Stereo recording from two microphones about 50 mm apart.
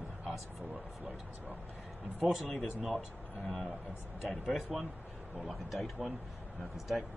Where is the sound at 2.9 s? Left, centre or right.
Centre.